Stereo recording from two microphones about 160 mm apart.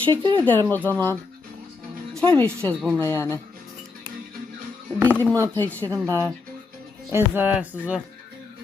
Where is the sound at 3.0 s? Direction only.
15° left (ahead or behind).